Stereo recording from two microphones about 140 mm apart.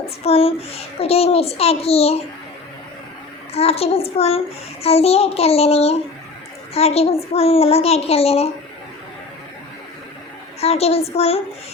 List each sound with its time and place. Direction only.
0.3 s a child's voice: 45° left (ahead or behind)
3.5 s a child's voice: 45° left (ahead or behind)
10.6 s a child's voice: 45° left (ahead or behind)